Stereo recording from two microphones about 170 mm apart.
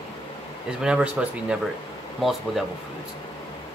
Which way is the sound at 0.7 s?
5° right (ahead or behind).